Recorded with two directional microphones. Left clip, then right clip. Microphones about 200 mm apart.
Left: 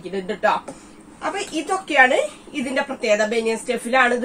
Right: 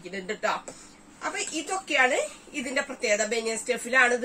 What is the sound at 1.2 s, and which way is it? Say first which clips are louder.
A woman's voice: left 6 dB; 15° right (ahead or behind).